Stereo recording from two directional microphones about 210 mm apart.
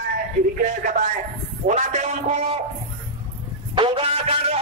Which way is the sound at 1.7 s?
35° right (ahead or behind).